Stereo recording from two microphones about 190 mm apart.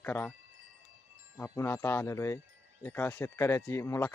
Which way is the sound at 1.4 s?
15° left (ahead or behind).